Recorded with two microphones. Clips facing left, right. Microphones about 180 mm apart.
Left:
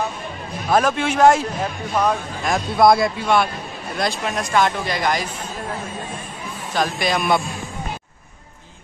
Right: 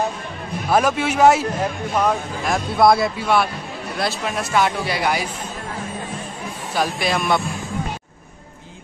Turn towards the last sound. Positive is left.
turn(degrees=0)  # may be behind; listen again after turning